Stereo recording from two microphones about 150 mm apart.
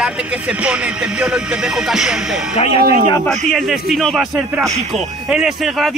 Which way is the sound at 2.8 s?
90° right.